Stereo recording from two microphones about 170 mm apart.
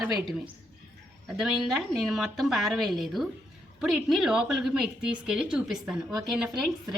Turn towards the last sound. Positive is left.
turn(degrees=-5)  # may be behind; listen again after turning